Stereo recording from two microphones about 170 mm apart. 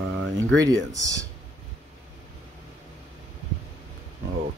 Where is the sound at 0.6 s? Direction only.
20° right (ahead or behind).